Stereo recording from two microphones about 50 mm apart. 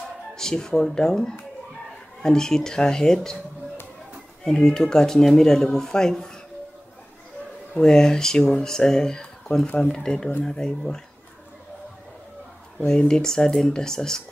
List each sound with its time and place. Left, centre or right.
0.4 s speech: centre
4.5 s speech: centre
7.7 s speech: centre
9.7 s speech: left
9.9 s speech: centre
13.1 s speech: centre